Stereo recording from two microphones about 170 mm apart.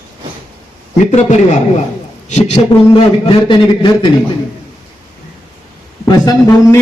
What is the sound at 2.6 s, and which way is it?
A man's voice, 30° left (ahead or behind).